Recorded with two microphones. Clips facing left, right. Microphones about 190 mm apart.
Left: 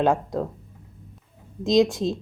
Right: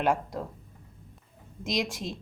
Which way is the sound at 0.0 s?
25° left (ahead or behind).